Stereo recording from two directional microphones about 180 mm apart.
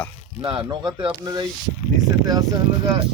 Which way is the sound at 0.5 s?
25° right (ahead or behind).